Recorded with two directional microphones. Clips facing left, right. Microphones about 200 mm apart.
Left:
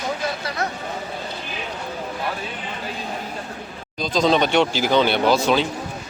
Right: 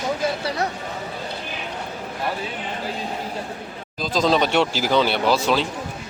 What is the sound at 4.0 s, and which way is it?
Speech, 5° right (ahead or behind).